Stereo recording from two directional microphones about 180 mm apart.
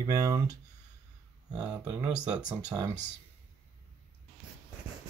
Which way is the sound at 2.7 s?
15° right (ahead or behind).